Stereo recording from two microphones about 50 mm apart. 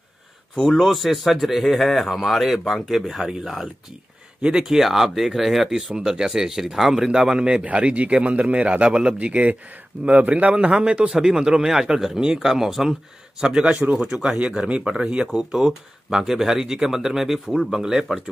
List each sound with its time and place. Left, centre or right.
0.6 s a man's voice: centre
4.4 s speech: centre
7.6 s a man's voice: right; by 13.7 s centre
13.7 s a man's voice: right
14.1 s speech: centre